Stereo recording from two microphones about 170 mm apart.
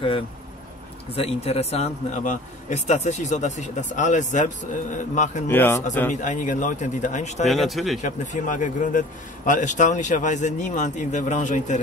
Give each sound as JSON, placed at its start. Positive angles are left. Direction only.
{"t": 1.1, "sound": "a man's voice", "side_deg": 35}
{"t": 5.5, "sound": "a man's voice", "side_deg": 10}
{"t": 6.2, "sound": "a man's voice", "side_deg": 50}
{"t": 7.4, "sound": "speech", "side_deg": 0}
{"t": 8.0, "sound": "a man's voice", "side_deg": 45}